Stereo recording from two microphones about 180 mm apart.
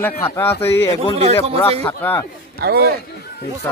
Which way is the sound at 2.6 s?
60° right (ahead or behind).